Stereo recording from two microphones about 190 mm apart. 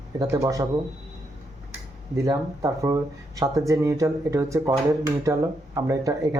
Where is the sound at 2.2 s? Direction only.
15° right (ahead or behind).